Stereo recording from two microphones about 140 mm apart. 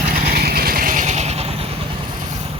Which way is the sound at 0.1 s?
90° right.